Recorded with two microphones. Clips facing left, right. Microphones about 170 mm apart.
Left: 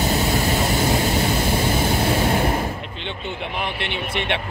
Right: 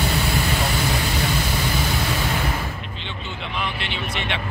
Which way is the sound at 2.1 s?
45° left (ahead or behind).